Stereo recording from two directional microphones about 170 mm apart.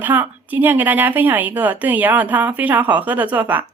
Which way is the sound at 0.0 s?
10° right (ahead or behind).